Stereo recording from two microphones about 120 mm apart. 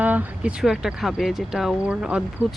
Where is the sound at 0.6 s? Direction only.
5° right (ahead or behind).